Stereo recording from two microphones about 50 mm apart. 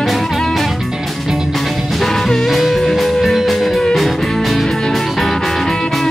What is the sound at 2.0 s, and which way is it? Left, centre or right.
Music, centre.